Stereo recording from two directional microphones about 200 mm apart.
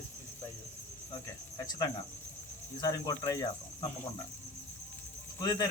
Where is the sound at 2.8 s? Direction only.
20° left (ahead or behind).